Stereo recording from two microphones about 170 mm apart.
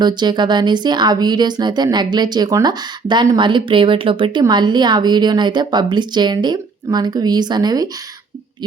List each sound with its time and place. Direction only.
0.0 s speech: 25° right (ahead or behind)